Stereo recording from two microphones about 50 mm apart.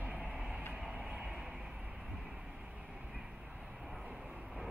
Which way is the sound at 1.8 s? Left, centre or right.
Right.